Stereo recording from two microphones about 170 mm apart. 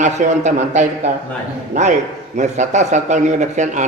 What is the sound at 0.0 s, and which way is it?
A man's voice, 45° right (ahead or behind).